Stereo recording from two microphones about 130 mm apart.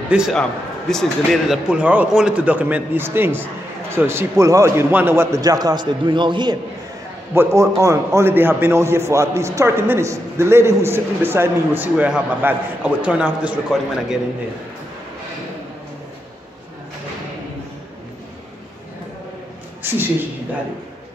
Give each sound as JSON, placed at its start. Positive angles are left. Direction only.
{"t": 0.3, "sound": "a man's voice", "side_deg": 5}
{"t": 7.3, "sound": "a man's voice", "side_deg": -25}
{"t": 19.8, "sound": "a sound", "side_deg": -15}